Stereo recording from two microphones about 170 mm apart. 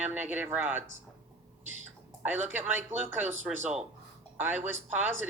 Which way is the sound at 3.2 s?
45° right (ahead or behind).